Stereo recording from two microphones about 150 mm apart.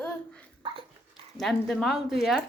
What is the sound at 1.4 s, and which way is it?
Speech, centre (ahead or behind).